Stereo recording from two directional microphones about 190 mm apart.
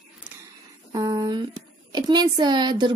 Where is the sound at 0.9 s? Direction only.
20° right (ahead or behind).